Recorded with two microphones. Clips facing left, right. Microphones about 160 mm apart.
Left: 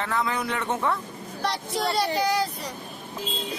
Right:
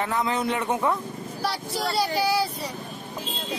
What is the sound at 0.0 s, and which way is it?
Speech, 20° right (ahead or behind).